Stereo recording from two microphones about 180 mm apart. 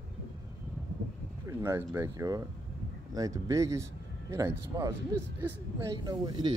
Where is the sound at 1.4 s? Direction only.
15° right (ahead or behind).